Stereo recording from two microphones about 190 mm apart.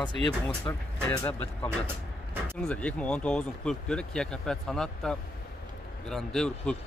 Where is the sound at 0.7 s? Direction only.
20° left (ahead or behind).